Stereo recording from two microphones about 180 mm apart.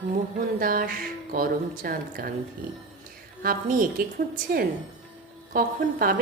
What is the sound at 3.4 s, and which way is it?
A woman's voice, 55° right (ahead or behind).